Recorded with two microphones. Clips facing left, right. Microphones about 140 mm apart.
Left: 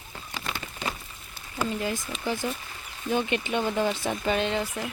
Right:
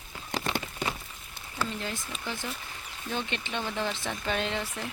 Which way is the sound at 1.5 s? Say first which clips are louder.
Left 5 dB; 15° left (ahead or behind).